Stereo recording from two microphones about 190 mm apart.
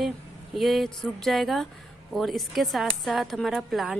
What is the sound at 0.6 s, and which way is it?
A woman's voice, centre (ahead or behind).